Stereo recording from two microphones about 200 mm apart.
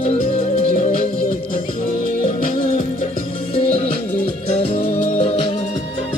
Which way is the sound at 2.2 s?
35° left (ahead or behind).